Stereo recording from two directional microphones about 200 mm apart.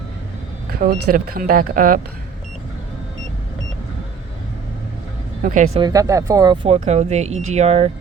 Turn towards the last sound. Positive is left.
turn(degrees=-30)  # may be behind; listen again after turning